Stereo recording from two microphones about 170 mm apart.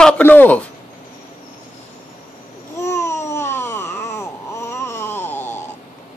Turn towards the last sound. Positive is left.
turn(degrees=10)  # may be behind; listen again after turning